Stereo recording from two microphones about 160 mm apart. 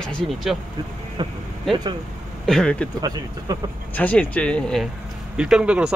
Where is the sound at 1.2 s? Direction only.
30° right (ahead or behind).